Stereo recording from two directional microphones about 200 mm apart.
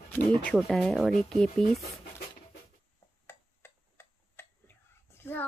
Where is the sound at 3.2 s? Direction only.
10° left (ahead or behind).